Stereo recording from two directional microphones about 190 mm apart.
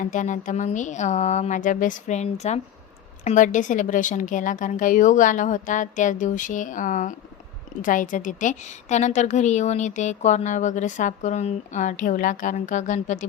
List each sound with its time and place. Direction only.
0.0 s a woman's voice: 40° left (ahead or behind)